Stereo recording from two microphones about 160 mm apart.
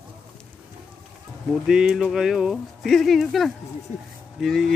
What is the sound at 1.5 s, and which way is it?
Speech, 5° right (ahead or behind).